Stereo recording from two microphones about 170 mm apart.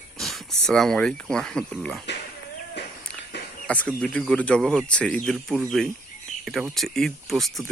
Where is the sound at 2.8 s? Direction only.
85° left.